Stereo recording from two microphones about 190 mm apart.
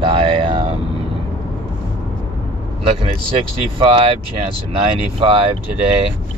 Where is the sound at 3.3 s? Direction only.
25° right (ahead or behind).